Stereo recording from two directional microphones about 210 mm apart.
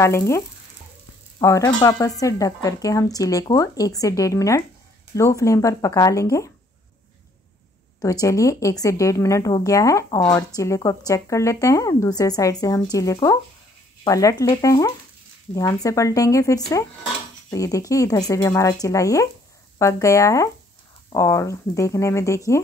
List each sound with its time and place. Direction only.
0.0 s speech: 15° left (ahead or behind)
1.4 s speech: 15° left (ahead or behind)
8.0 s speech: 15° left (ahead or behind)